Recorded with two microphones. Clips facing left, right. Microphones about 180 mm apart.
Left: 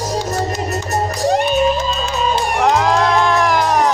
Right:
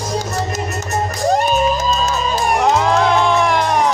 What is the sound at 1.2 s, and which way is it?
Music, 40° right (ahead or behind).